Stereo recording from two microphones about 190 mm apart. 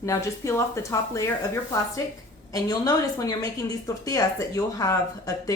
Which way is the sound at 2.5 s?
20° left (ahead or behind).